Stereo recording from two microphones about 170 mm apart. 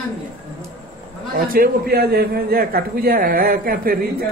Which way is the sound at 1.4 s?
60° right (ahead or behind).